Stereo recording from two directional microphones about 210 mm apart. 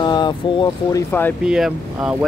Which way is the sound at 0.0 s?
20° left (ahead or behind).